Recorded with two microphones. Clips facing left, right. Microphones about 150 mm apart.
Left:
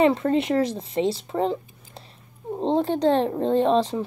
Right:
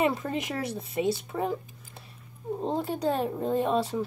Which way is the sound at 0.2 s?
60° left (ahead or behind).